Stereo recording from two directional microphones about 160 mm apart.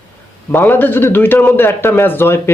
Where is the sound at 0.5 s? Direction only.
10° left (ahead or behind).